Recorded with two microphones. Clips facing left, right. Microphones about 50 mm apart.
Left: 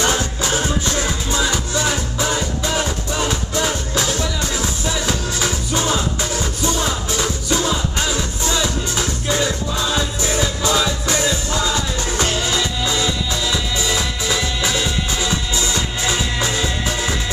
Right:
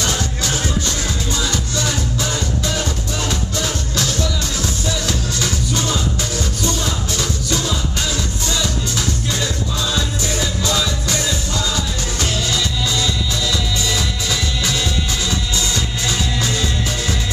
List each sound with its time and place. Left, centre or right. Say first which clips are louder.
0.0 s music: left 3 dB; left